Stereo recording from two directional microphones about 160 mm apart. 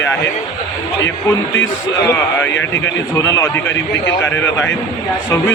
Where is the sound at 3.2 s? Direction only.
20° left (ahead or behind).